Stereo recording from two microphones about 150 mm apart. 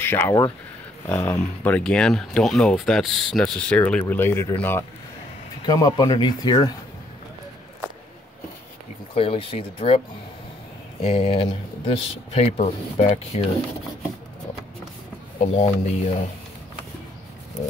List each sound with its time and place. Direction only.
0.0 s speech: 15° left (ahead or behind)
5.7 s speech: 25° left (ahead or behind)
9.1 s speech: 40° left (ahead or behind)
15.4 s speech: 40° left (ahead or behind)